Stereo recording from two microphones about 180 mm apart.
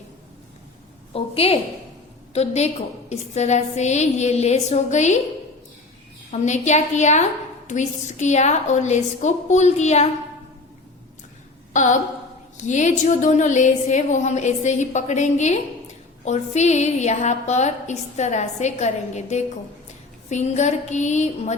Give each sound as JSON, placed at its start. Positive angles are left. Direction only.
{"t": 1.1, "sound": "a woman's voice", "side_deg": 35}
{"t": 6.3, "sound": "a woman's voice", "side_deg": 40}
{"t": 11.7, "sound": "a sound", "side_deg": 45}
{"t": 12.5, "sound": "a woman's voice", "side_deg": 40}